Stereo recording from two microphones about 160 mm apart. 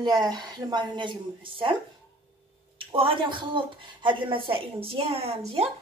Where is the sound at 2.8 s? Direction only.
35° right (ahead or behind).